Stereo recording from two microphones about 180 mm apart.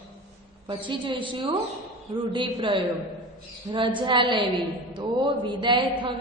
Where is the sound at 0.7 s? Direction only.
25° right (ahead or behind).